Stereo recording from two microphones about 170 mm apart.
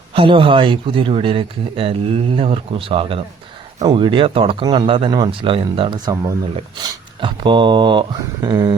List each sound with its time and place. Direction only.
0.1 s speech: 30° right (ahead or behind)